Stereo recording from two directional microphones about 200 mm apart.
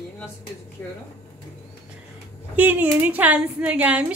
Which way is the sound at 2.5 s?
10° right (ahead or behind).